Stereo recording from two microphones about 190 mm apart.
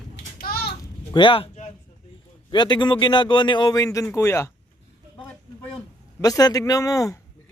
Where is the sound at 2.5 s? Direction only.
25° left (ahead or behind).